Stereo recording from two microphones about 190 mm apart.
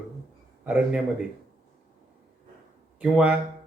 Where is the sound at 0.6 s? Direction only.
10° right (ahead or behind).